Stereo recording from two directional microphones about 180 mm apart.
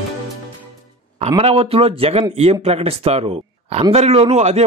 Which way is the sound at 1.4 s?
30° right (ahead or behind).